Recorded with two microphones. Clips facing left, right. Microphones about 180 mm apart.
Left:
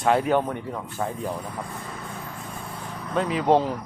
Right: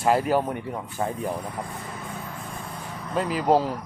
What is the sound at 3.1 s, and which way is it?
Speech, centre (ahead or behind).